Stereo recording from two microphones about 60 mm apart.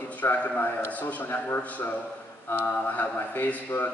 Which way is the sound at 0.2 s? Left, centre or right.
Left.